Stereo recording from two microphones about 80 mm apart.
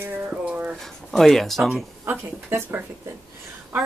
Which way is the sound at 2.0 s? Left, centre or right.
Right.